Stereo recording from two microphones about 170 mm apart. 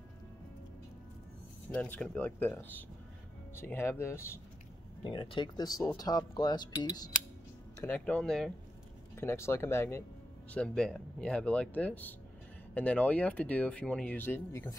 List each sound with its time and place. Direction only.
1.7 s speech: 10° left (ahead or behind)
5.0 s speech: 30° left (ahead or behind)
7.8 s speech: 10° left (ahead or behind)
9.1 s speech: 15° left (ahead or behind)